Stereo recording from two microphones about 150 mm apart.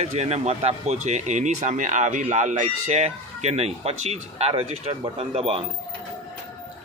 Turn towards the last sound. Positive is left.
turn(degrees=-40)  # may be behind; listen again after turning